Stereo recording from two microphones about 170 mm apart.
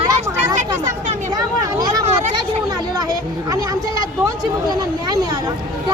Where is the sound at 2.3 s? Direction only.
25° right (ahead or behind).